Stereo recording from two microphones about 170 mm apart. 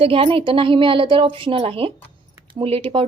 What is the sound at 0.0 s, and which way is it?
Speech, 35° right (ahead or behind).